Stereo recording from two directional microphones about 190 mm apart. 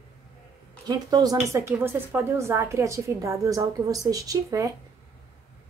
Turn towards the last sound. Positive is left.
turn(degrees=-20)  # may be behind; listen again after turning